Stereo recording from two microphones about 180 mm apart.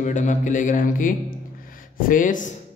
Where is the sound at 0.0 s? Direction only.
40° left (ahead or behind).